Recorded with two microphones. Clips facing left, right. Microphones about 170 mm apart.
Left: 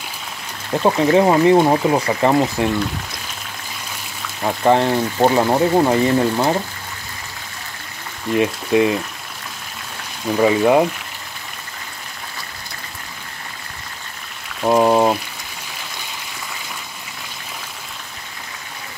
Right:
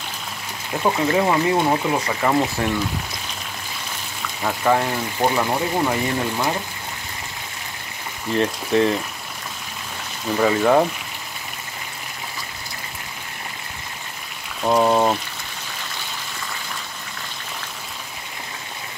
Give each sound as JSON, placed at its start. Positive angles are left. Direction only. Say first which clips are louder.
{"t": 0.8, "sound": "speech", "louder": "left 5 dB", "side_deg": 30}
{"t": 4.5, "sound": "speech", "louder": "left 5 dB", "side_deg": 25}
{"t": 8.4, "sound": "speech", "louder": "left 3 dB", "side_deg": 10}
{"t": 10.3, "sound": "speech", "louder": "left 3 dB", "side_deg": 10}
{"t": 14.6, "sound": "a sound", "louder": "left 3 dB", "side_deg": 15}